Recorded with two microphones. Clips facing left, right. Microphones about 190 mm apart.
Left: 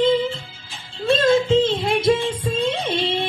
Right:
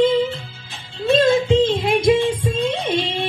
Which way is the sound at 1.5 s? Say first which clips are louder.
Right 2 dB; 15° right (ahead or behind).